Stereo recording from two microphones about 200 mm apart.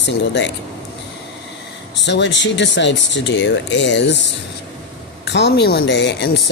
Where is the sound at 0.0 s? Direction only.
65° left (ahead or behind).